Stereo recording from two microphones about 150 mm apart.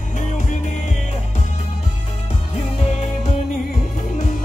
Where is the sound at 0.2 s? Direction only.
55° left (ahead or behind).